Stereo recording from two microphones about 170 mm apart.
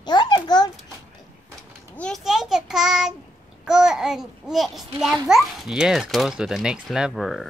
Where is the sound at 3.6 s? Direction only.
5° right (ahead or behind).